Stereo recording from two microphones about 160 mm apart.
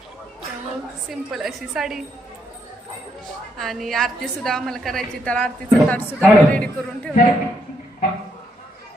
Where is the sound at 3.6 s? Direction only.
Centre (ahead or behind).